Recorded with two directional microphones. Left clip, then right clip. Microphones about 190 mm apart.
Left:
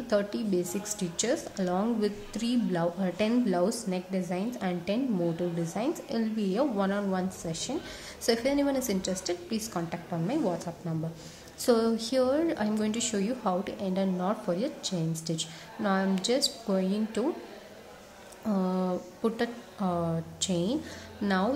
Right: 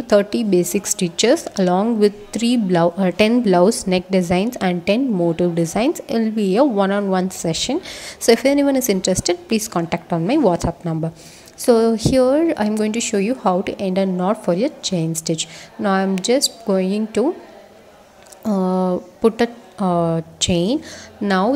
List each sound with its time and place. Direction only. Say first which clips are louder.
0.0 s a woman's voice: right 13 dB; 35° right (ahead or behind)
18.4 s a woman's voice: right 11 dB; 35° right (ahead or behind)